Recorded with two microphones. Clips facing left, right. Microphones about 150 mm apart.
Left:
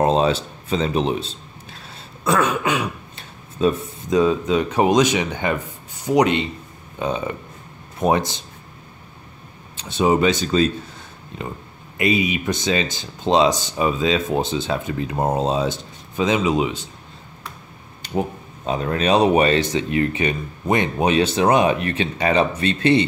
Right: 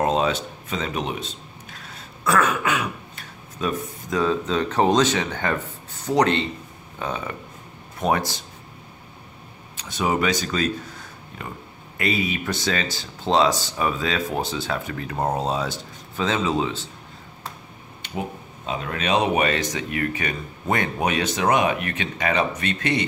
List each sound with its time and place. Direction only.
0.0 s speech: 30° left (ahead or behind)
9.8 s speech: 25° left (ahead or behind)
18.0 s a sound: 40° left (ahead or behind)
18.7 s speech: 35° left (ahead or behind)